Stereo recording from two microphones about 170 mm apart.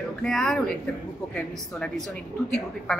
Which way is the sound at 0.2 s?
Centre (ahead or behind).